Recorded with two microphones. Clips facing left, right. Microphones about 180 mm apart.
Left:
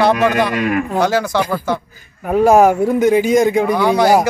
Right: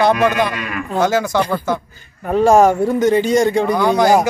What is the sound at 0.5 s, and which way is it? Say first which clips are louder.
Speech: left 9 dB; 45° left (ahead or behind).